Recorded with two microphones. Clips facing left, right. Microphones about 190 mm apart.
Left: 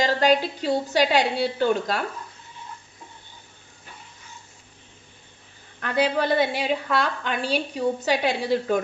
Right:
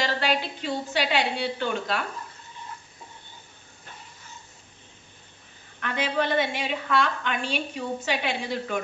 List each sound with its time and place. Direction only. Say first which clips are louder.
0.0 s a woman's voice: left 6 dB; 40° left (ahead or behind)
5.8 s a woman's voice: left 4 dB; 40° left (ahead or behind)